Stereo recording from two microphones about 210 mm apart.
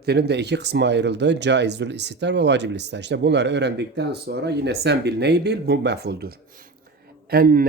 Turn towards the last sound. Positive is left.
turn(degrees=-45)  # may be behind; listen again after turning